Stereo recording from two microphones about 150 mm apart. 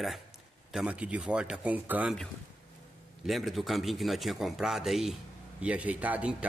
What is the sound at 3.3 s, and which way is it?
A man's voice, centre (ahead or behind).